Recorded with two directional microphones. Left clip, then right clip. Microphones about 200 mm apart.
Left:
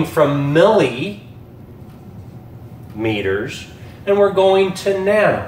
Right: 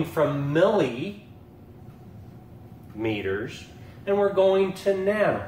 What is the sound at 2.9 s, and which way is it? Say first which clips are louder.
Speech: left 8 dB; 10° right (ahead or behind).